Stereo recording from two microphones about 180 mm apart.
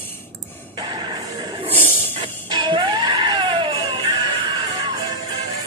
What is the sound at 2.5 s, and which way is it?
Music, 25° right (ahead or behind).